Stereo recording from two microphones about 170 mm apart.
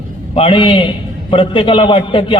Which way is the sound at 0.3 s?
30° left (ahead or behind).